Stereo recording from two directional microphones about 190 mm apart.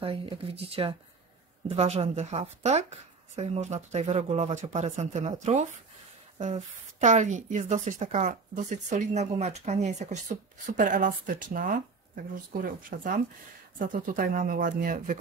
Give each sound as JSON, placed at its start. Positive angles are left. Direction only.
{"t": 0.0, "sound": "a woman's voice", "side_deg": -30}